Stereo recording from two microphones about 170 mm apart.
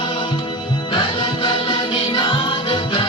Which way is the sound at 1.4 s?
30° left (ahead or behind).